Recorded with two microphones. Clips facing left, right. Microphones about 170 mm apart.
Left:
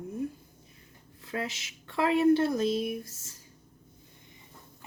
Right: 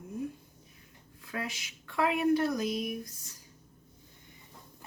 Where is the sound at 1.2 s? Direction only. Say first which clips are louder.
Left 3 dB; 25° left (ahead or behind).